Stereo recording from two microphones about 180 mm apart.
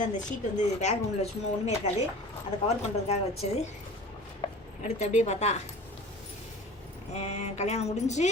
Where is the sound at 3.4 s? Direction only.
35° left (ahead or behind).